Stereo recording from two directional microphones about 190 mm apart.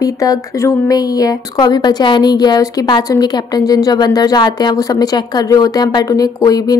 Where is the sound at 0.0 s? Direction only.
20° left (ahead or behind).